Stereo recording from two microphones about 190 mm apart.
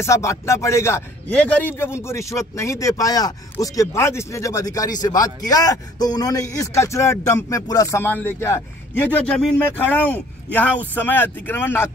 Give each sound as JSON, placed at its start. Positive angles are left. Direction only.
{"t": 0.0, "sound": "speech", "side_deg": 15}